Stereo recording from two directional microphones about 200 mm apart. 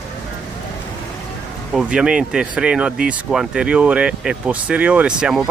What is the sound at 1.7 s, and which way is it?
Speech, 5° right (ahead or behind).